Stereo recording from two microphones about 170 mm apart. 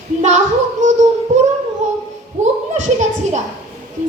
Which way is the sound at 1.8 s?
40° right (ahead or behind).